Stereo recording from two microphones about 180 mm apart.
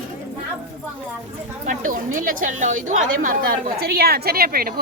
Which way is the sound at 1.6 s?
45° right (ahead or behind).